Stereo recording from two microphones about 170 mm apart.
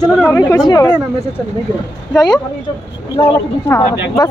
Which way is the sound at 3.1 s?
15° left (ahead or behind).